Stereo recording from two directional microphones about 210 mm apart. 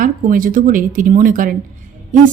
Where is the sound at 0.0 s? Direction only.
40° right (ahead or behind).